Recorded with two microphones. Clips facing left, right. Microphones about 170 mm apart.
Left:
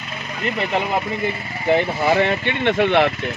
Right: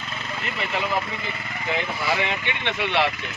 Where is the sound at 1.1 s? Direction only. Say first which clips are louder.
Left 8 dB; 25° left (ahead or behind).